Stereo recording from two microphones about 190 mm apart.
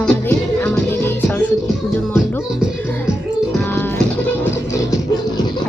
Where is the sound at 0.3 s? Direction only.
10° left (ahead or behind).